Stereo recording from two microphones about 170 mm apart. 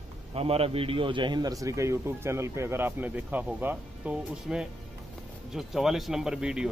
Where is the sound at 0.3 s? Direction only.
35° right (ahead or behind).